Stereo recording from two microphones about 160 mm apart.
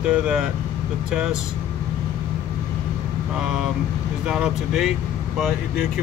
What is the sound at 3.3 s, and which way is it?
Speech, 5° right (ahead or behind).